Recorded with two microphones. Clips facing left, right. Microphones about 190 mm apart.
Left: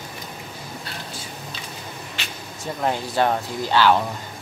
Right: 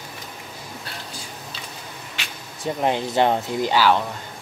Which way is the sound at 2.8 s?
20° right (ahead or behind).